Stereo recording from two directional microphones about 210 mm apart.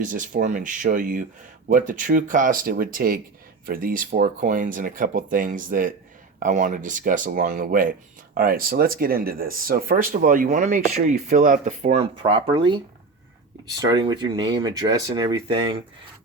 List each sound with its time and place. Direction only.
0.0 s speech: 40° right (ahead or behind); by 15.6 s 20° right (ahead or behind)